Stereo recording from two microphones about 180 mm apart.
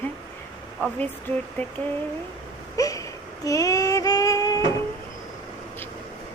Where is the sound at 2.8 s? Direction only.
20° left (ahead or behind).